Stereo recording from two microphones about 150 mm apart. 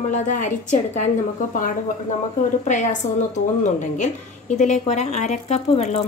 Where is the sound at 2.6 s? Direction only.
55° left (ahead or behind).